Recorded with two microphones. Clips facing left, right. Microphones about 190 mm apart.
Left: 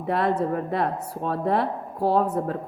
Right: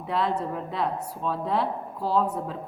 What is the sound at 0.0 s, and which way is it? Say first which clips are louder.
A woman's voice: left 4 dB; 55° left (ahead or behind).